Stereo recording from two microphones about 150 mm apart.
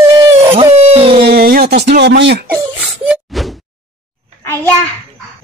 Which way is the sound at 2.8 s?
5° right (ahead or behind).